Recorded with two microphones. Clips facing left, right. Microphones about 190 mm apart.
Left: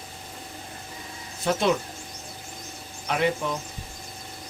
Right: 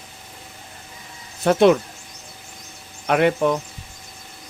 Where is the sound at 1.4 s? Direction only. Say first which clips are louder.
Right 7 dB; 65° right (ahead or behind).